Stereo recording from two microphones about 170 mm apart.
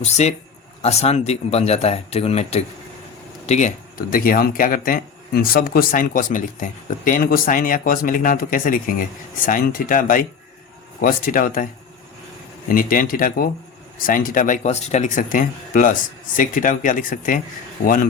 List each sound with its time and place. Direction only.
0.0 s speech: 40° left (ahead or behind)
3.9 s speech: 55° left (ahead or behind)